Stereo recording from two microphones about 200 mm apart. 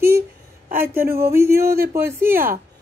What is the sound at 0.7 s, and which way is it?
Speech, 10° right (ahead or behind).